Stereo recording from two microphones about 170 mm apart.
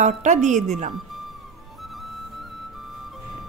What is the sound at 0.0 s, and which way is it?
Speech, 45° right (ahead or behind).